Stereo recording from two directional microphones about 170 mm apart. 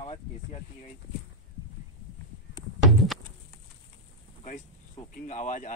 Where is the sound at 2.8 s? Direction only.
Centre (ahead or behind).